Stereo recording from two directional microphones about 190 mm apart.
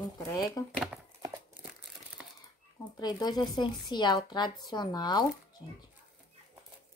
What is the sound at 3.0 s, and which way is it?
Speech, 20° left (ahead or behind).